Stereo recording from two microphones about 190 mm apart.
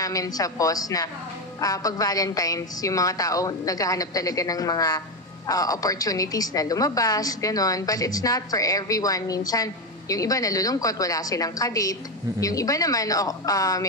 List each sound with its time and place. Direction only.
0.0 s a woman's voice: 20° left (ahead or behind)